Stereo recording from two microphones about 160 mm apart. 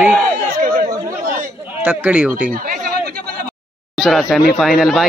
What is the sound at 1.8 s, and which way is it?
Speech, 10° right (ahead or behind).